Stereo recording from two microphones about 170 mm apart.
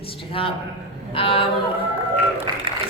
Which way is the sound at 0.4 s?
30° left (ahead or behind).